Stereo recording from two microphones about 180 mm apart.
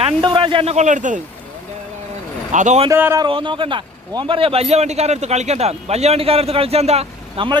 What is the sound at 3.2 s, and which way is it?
A man's voice, 25° right (ahead or behind).